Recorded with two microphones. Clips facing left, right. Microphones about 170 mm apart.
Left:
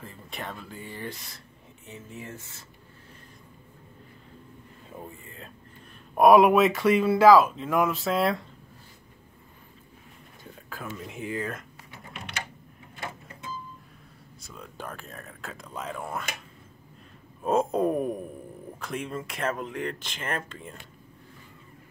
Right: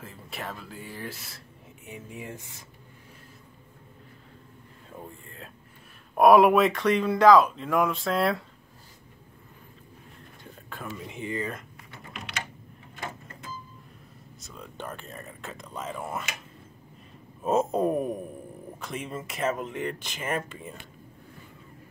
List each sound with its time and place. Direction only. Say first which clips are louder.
0.0 s speech: even; centre (ahead or behind)
1.9 s speech: right 1 dB; 15° right (ahead or behind)
4.9 s speech: left 1 dB; 5° left (ahead or behind)
10.7 s speech: even; centre (ahead or behind)
14.4 s speech: right 1 dB; centre (ahead or behind)
17.4 s speech: even; 5° right (ahead or behind)